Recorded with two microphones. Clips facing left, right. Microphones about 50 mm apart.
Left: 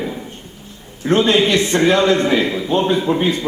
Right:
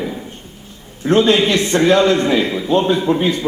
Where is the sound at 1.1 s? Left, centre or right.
Left.